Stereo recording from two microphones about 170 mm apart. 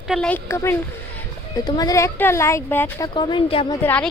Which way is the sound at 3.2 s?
25° left (ahead or behind).